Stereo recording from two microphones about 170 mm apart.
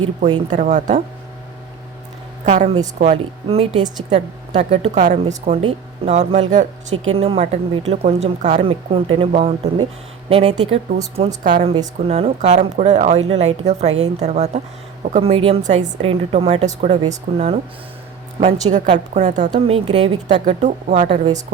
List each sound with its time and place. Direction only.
0.5 s a woman's voice: 45° right (ahead or behind)
2.4 s speech: 40° right (ahead or behind)
11.4 s a woman's voice: 50° right (ahead or behind)
11.9 s a woman's voice: 35° right (ahead or behind)
16.0 s speech: 35° right (ahead or behind)
18.6 s a woman's voice: 45° right (ahead or behind)